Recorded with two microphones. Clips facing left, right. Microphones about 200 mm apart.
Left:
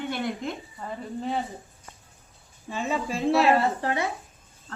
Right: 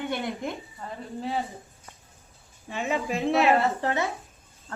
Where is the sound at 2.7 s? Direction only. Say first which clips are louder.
Even; 15° right (ahead or behind).